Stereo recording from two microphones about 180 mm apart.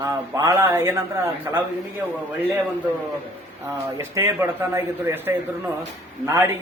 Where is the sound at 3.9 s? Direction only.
15° right (ahead or behind).